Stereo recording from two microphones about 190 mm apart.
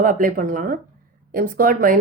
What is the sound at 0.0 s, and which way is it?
Speech, 45° right (ahead or behind).